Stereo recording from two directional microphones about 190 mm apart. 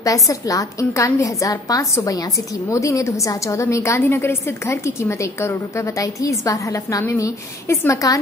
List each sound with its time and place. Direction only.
0.0 s a woman's voice: 15° left (ahead or behind)